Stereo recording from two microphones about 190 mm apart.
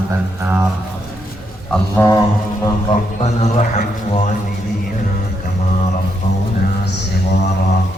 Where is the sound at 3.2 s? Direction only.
35° left (ahead or behind).